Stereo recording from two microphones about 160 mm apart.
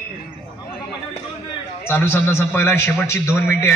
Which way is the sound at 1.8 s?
15° left (ahead or behind).